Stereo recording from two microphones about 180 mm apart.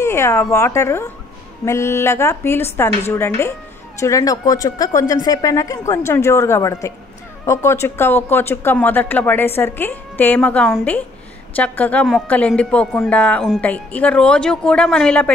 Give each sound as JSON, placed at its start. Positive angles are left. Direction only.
{"t": 0.0, "sound": "a woman's voice", "side_deg": 15}